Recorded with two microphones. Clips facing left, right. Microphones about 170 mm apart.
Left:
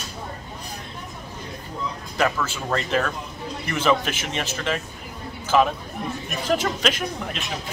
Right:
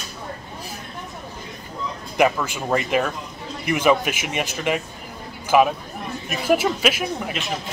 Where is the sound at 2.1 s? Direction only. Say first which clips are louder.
Right 4 dB; 15° right (ahead or behind).